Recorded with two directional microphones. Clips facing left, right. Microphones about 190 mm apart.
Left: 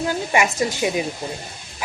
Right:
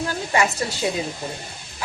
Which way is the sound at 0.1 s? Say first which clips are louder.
Left 1 dB; 15° left (ahead or behind).